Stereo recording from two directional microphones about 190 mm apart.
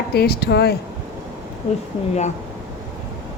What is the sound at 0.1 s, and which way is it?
Speech, 55° left (ahead or behind).